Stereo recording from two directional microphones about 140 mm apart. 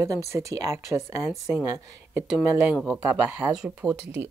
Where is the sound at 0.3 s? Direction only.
25° right (ahead or behind).